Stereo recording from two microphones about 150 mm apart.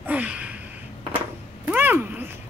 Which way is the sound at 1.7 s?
10° right (ahead or behind).